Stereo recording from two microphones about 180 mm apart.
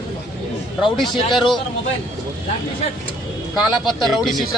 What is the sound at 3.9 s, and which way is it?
Speech, centre (ahead or behind).